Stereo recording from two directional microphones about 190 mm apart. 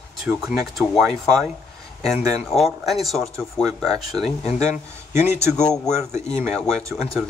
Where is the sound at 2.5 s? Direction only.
Centre (ahead or behind).